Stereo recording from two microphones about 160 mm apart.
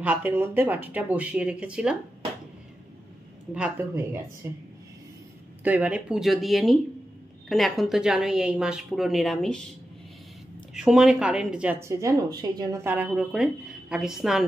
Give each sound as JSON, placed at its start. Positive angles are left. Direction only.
{"t": 0.0, "sound": "speech", "side_deg": -10}
{"t": 3.5, "sound": "speech", "side_deg": -10}
{"t": 10.7, "sound": "speech", "side_deg": -5}